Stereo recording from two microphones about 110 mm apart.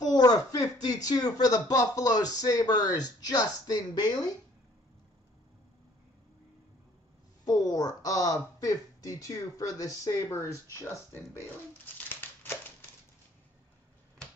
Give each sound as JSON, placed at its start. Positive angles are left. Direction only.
{"t": 0.0, "sound": "speech", "side_deg": 35}
{"t": 7.4, "sound": "speech", "side_deg": 35}